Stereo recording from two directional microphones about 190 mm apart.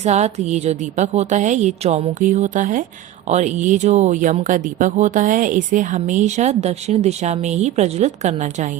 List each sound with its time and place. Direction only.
0.0 s speech: 35° right (ahead or behind)